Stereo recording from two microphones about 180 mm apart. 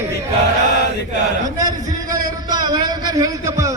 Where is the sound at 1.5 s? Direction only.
20° right (ahead or behind).